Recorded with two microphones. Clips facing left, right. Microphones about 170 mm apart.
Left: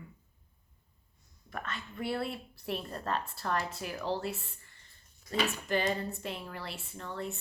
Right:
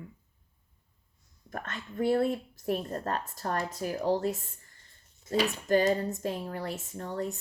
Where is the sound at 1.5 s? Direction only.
45° right (ahead or behind).